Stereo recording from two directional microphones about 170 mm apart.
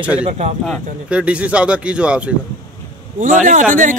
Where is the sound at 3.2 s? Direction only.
50° right (ahead or behind).